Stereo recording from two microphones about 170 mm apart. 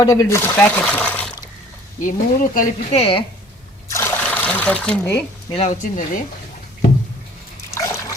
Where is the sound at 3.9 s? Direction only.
15° left (ahead or behind).